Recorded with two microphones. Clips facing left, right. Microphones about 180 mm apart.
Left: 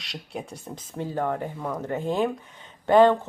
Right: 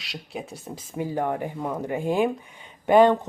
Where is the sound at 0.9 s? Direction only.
10° right (ahead or behind).